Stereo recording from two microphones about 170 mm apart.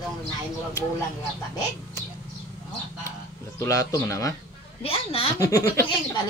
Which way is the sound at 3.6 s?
20° left (ahead or behind).